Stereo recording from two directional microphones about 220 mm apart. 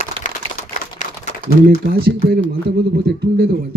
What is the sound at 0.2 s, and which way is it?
Typewriter, 25° right (ahead or behind).